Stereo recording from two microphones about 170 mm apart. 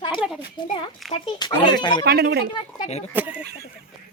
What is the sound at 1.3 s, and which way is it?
Speech, 25° left (ahead or behind).